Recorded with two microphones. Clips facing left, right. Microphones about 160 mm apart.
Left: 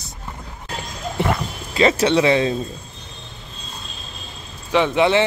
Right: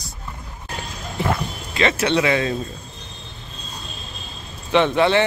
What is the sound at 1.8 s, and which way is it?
Speech, 35° left (ahead or behind).